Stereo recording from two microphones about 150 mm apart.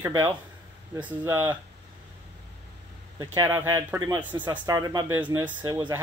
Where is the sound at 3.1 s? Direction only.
20° right (ahead or behind).